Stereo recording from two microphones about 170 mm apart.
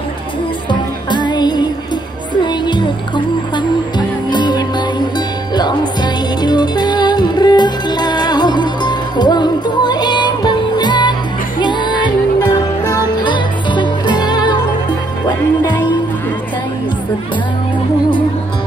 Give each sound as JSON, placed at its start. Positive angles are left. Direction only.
{"t": 0.7, "sound": "music", "side_deg": 25}
{"t": 4.3, "sound": "music", "side_deg": 25}